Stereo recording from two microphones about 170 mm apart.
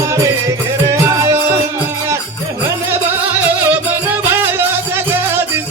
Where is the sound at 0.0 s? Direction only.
15° right (ahead or behind).